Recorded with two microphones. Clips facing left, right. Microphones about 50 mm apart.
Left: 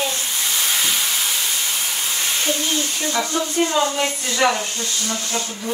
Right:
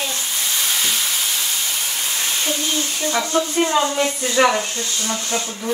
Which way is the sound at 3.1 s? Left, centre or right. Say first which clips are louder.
Right 3 dB; centre.